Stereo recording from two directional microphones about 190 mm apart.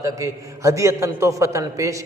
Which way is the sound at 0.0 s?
15° right (ahead or behind).